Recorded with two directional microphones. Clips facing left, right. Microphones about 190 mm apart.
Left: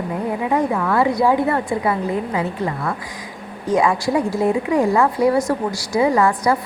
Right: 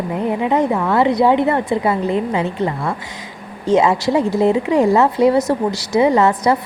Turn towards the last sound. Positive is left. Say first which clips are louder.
# right 3 dB
turn(degrees=-25)  # may be behind; listen again after turning